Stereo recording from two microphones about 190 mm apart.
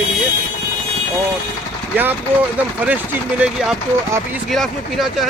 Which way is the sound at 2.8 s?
5° right (ahead or behind).